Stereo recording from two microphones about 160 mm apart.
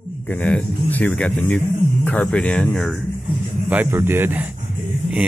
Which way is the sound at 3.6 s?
10° right (ahead or behind).